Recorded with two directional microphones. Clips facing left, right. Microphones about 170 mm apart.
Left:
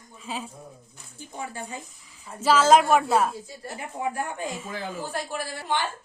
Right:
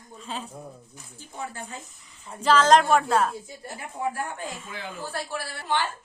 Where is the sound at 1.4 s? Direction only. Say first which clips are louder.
Left 1 dB; 15° left (ahead or behind).